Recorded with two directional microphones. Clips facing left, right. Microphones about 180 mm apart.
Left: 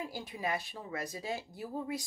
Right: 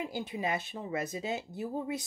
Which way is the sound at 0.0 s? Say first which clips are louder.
Right 4 dB; 25° right (ahead or behind).